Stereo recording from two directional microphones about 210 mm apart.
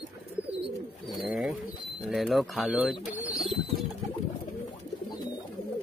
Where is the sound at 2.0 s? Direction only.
Centre (ahead or behind).